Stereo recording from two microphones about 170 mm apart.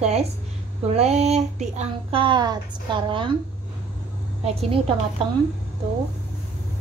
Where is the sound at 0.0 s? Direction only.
40° right (ahead or behind).